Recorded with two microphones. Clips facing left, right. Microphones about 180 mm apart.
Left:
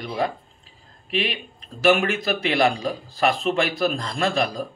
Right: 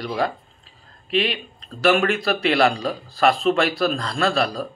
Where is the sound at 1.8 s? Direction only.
20° left (ahead or behind).